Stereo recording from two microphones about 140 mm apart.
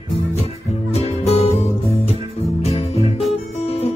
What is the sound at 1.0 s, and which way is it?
Music, 45° left (ahead or behind).